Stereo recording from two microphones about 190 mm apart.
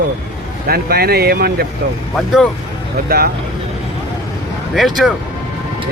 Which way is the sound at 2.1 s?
Centre (ahead or behind).